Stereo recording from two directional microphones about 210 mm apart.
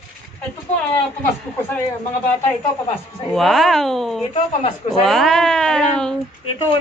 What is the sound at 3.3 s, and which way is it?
Speech, centre (ahead or behind).